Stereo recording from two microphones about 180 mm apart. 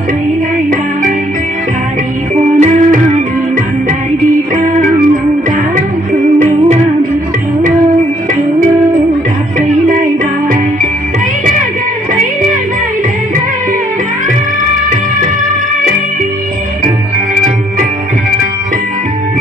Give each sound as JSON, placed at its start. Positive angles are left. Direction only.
{"t": 2.6, "sound": "music", "side_deg": -40}